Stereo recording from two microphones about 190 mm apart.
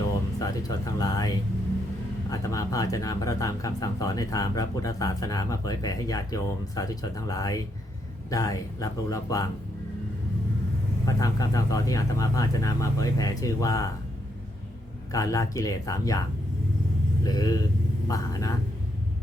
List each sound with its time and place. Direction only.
0.3 s speech: 20° left (ahead or behind)
2.3 s speech: 15° left (ahead or behind)
11.0 s speech: 20° left (ahead or behind)
15.1 s speech: 20° left (ahead or behind)
17.2 s speech: 20° left (ahead or behind)